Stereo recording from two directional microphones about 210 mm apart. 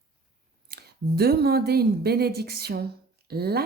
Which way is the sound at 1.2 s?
50° right (ahead or behind).